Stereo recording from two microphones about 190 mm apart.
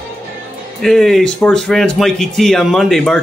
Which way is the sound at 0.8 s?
Centre (ahead or behind).